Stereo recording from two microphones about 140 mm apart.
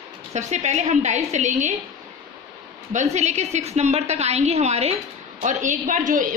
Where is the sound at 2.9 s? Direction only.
55° right (ahead or behind).